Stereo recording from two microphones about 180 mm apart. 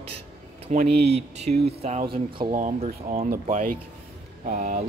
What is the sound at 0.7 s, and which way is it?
Speech, 40° right (ahead or behind).